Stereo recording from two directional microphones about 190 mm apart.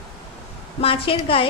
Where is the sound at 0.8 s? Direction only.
30° left (ahead or behind).